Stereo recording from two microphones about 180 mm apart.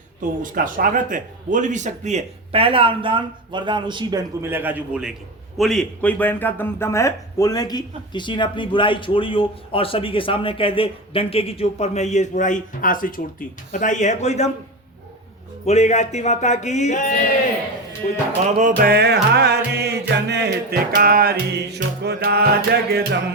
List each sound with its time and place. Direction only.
0.4 s speech: 50° right (ahead or behind); by 4.2 s 25° right (ahead or behind)
4.4 s a man's voice: 10° right (ahead or behind); by 14.5 s 40° left (ahead or behind)
15.6 s speech: 40° left (ahead or behind)
18.4 s speech: 40° right (ahead or behind)
18.8 s music: 60° right (ahead or behind)